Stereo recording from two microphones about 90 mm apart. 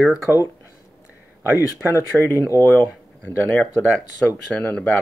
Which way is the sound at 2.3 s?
30° left (ahead or behind).